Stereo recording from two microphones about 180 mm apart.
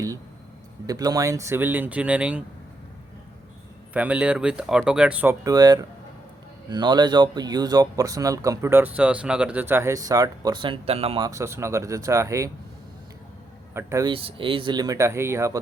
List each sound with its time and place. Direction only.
0.9 s speech: 20° right (ahead or behind)
3.9 s speech: 10° right (ahead or behind); by 11.3 s 30° right (ahead or behind)
11.3 s speech: 15° right (ahead or behind)
13.7 s speech: 15° right (ahead or behind)
14.1 s speech: 30° right (ahead or behind)